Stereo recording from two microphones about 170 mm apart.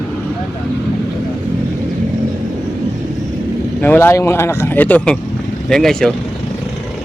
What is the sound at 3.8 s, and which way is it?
Speech, 15° left (ahead or behind).